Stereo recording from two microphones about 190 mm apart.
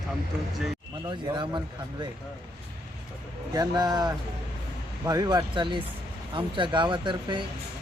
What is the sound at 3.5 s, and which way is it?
Speech, 20° right (ahead or behind).